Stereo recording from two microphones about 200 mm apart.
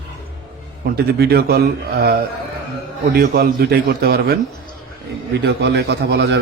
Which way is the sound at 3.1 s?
45° right (ahead or behind).